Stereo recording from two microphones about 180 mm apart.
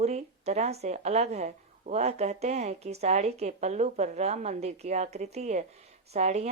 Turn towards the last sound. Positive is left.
turn(degrees=-40)  # may be behind; listen again after turning